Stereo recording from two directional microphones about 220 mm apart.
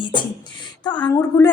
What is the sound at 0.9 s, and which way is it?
Speech, 10° left (ahead or behind).